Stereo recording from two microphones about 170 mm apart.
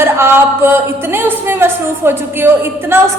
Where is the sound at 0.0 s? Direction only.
15° right (ahead or behind).